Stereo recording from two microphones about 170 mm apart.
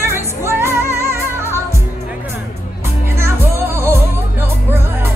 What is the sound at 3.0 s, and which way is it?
Music, 15° right (ahead or behind).